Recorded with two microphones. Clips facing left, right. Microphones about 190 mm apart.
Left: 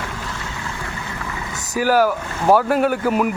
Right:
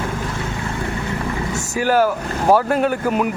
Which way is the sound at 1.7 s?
5° left (ahead or behind).